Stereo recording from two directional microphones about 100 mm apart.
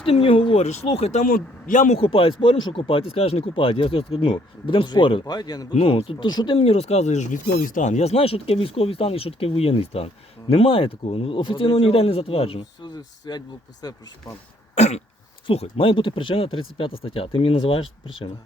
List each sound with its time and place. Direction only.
0.0 s speech: 70° left (ahead or behind); by 1.1 s 90° left
1.9 s speech: 65° left (ahead or behind)
5.2 s speech: 45° left (ahead or behind)
5.7 s speech: 85° left; by 6.2 s 65° left (ahead or behind)
6.2 s speech: 45° left (ahead or behind)
6.6 s speech: 90° left
8.0 s speech: 80° left
12.8 s speech: 45° left (ahead or behind)
14.8 s throat clearing: 90° left
15.4 s speech: 70° left (ahead or behind)